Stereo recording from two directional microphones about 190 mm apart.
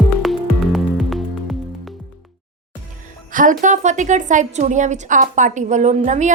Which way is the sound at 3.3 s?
45° right (ahead or behind).